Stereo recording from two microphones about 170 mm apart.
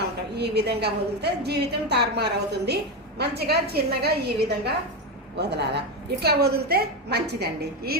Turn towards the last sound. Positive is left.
turn(degrees=-70)  # may be behind; listen again after turning